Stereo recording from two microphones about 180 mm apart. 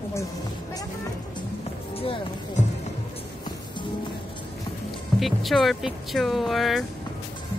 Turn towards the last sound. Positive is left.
turn(degrees=0)  # may be behind; listen again after turning